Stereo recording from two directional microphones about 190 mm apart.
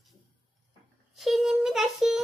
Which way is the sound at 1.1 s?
Centre (ahead or behind).